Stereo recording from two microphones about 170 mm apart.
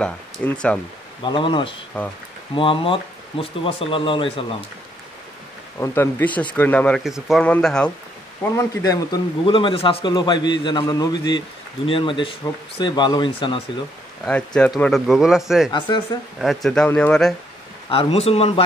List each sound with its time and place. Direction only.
0.4 s speech: 10° left (ahead or behind)
1.2 s a man's voice: 30° left (ahead or behind)
5.8 s speech: 15° left (ahead or behind)
7.0 s speech: centre (ahead or behind)
8.5 s a man's voice: 20° left (ahead or behind)
14.2 s speech: 5° left (ahead or behind)
17.8 s speech: 35° left (ahead or behind)